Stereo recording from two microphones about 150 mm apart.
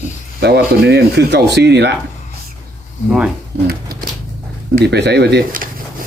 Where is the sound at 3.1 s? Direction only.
5° right (ahead or behind).